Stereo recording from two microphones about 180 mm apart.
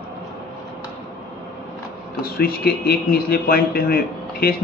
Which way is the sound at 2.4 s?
60° left (ahead or behind).